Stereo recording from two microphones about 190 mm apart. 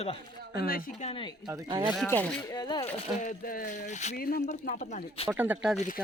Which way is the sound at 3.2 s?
45° left (ahead or behind).